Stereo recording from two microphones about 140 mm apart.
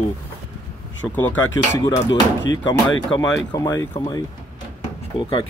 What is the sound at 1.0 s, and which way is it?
Speech, 5° left (ahead or behind).